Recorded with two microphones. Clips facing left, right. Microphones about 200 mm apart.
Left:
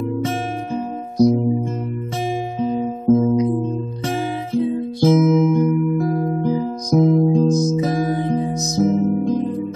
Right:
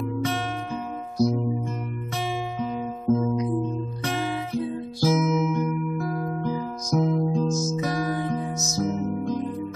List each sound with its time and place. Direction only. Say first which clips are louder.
2.6 s music: left 10 dB; 30° left (ahead or behind)
7.5 s music: left 7 dB; 20° left (ahead or behind)